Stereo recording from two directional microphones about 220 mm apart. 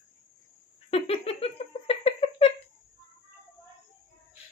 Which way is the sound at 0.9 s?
25° left (ahead or behind).